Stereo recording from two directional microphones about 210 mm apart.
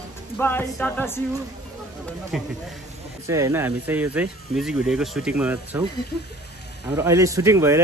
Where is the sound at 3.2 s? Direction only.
15° right (ahead or behind).